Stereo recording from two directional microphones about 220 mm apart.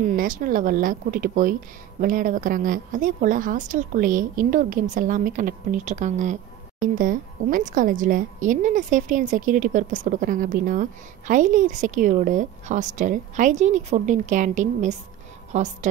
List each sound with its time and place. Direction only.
0.0 s speech: 40° right (ahead or behind)